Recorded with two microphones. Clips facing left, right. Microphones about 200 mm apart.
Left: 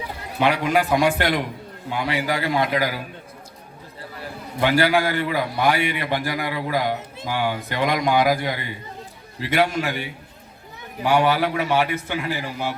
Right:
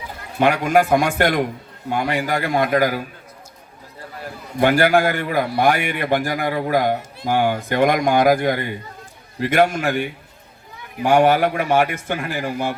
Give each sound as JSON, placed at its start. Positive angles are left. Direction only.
{"t": 0.3, "sound": "a man's voice", "side_deg": -50}
{"t": 4.6, "sound": "a man's voice", "side_deg": -50}